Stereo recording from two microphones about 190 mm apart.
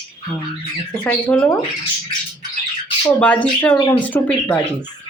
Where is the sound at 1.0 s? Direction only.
5° left (ahead or behind).